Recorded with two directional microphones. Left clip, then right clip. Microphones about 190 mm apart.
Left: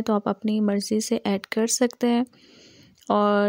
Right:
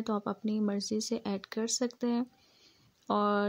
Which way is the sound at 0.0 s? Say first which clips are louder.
Left 10 dB; 40° left (ahead or behind).